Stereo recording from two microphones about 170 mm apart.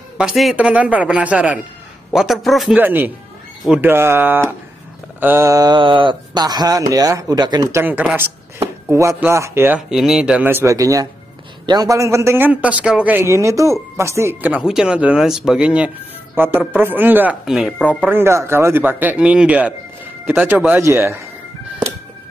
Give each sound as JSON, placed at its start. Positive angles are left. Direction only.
{"t": 0.2, "sound": "a man's voice", "side_deg": 0}
{"t": 2.8, "sound": "speech", "side_deg": -10}
{"t": 7.8, "sound": "speech", "side_deg": -10}
{"t": 18.0, "sound": "speech", "side_deg": -15}